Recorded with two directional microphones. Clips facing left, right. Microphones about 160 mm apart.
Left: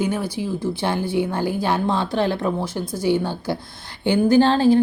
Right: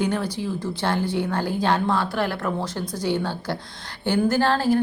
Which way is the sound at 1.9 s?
20° left (ahead or behind).